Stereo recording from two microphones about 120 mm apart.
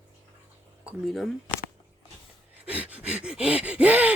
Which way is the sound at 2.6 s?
10° right (ahead or behind).